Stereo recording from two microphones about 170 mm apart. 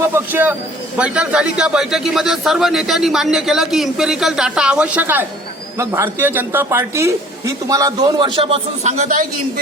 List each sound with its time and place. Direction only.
0.0 s a man's voice: 10° right (ahead or behind); by 9.2 s 45° right (ahead or behind)